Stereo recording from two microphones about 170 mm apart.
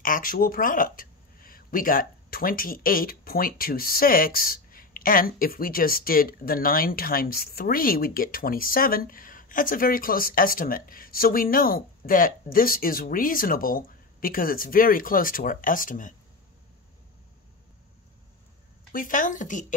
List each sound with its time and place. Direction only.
0.0 s speech: 55° left (ahead or behind)
18.9 s speech: 55° left (ahead or behind)